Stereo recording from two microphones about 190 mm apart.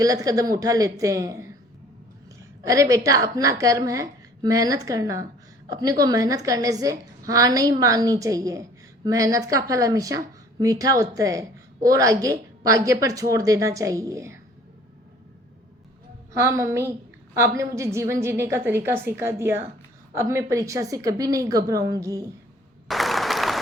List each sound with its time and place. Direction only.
0.0 s a woman's voice: 15° right (ahead or behind)
2.6 s a woman's voice: 15° right (ahead or behind)
16.3 s a woman's voice: 15° right (ahead or behind)
22.9 s applause: centre (ahead or behind)